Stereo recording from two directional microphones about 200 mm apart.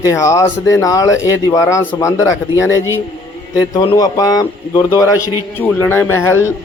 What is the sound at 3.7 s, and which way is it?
A man's voice, 20° left (ahead or behind).